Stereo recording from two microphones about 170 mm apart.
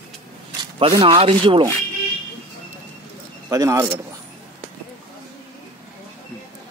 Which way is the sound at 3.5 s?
20° right (ahead or behind).